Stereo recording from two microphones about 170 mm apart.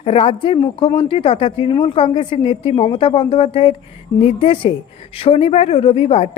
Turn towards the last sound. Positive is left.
turn(degrees=35)  # may be behind; listen again after turning